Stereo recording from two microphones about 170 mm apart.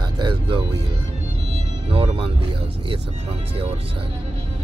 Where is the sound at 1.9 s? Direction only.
30° right (ahead or behind).